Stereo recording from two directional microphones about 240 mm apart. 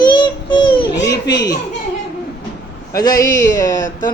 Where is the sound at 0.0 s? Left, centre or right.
Centre.